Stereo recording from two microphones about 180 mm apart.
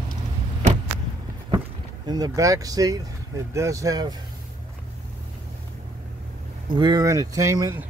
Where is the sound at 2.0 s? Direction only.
20° right (ahead or behind).